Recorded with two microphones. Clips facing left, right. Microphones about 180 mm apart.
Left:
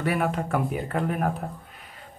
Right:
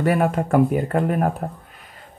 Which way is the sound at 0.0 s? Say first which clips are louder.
Right 6 dB; 45° right (ahead or behind).